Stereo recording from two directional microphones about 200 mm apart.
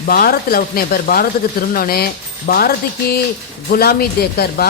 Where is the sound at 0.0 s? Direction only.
45° left (ahead or behind).